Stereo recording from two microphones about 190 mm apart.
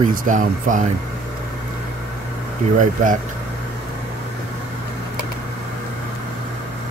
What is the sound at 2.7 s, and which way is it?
Speech, 45° right (ahead or behind).